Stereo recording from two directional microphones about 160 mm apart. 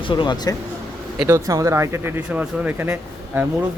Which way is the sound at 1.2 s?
20° right (ahead or behind).